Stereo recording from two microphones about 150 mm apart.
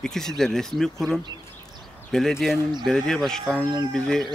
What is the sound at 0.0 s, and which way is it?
Speech, 5° left (ahead or behind).